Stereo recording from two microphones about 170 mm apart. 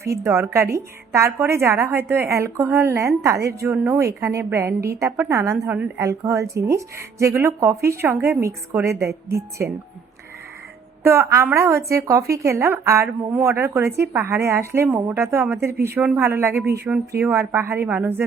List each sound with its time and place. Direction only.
0.2 s a woman's voice: 15° right (ahead or behind)
11.0 s a woman's voice: 15° right (ahead or behind)